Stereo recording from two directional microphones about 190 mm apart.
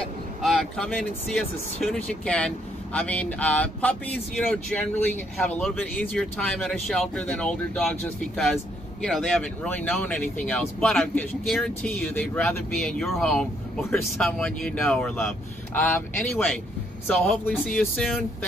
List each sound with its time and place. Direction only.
0.4 s a sound: centre (ahead or behind)
1.8 s speech: 5° left (ahead or behind)
17.1 s speech: 5° left (ahead or behind)